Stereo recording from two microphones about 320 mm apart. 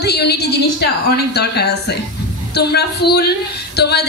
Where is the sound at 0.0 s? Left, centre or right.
Left.